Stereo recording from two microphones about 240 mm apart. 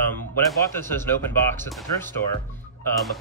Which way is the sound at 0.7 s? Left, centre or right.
Centre.